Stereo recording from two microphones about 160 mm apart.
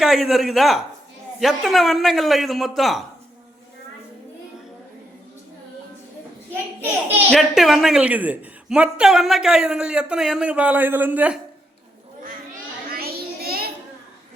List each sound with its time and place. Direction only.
0.0 s a man's voice: 5° right (ahead or behind)
7.3 s a woman's voice: centre (ahead or behind)
12.9 s a sound: 75° right (ahead or behind)